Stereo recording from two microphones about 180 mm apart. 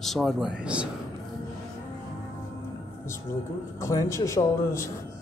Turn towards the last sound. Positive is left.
turn(degrees=15)  # may be behind; listen again after turning